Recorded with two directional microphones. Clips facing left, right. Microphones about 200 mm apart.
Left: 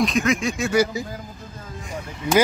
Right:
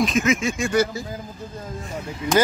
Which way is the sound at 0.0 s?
Centre (ahead or behind).